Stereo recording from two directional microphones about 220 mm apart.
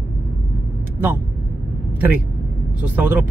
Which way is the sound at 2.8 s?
10° right (ahead or behind).